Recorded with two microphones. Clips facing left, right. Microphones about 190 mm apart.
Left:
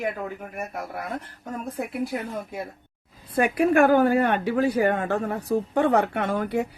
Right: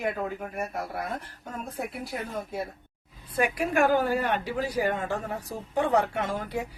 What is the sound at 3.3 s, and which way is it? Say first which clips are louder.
A woman's voice: left 6 dB; 60° left (ahead or behind).